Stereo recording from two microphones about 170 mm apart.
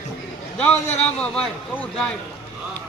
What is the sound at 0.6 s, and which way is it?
Speech, 10° left (ahead or behind).